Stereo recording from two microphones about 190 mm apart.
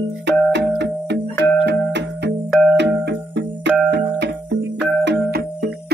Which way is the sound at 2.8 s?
65° right (ahead or behind).